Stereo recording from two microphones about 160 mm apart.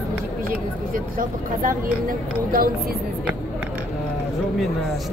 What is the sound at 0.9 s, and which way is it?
Speech, 60° right (ahead or behind).